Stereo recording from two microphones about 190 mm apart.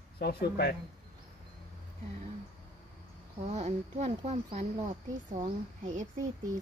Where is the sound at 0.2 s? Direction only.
55° left (ahead or behind).